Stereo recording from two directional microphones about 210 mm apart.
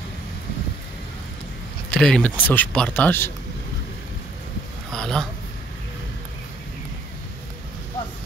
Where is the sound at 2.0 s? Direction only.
5° left (ahead or behind).